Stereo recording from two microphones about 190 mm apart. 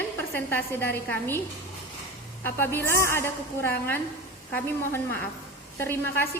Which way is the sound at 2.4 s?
10° left (ahead or behind).